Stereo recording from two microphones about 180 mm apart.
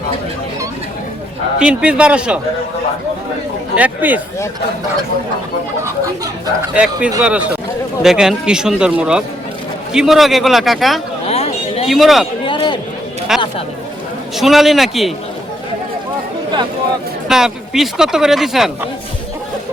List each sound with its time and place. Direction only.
1.5 s a man's voice: 5° right (ahead or behind)
3.8 s a man's voice: 10° right (ahead or behind)
6.7 s a man's voice: 5° right (ahead or behind)
11.3 s a sound: 35° left (ahead or behind)
11.9 s speech: centre (ahead or behind)
12.5 s chatter: 25° left (ahead or behind)
13.3 s speech: 5° right (ahead or behind)
17.2 s speech: 5° right (ahead or behind)